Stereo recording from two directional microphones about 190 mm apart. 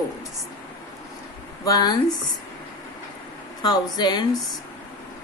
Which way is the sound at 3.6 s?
20° left (ahead or behind).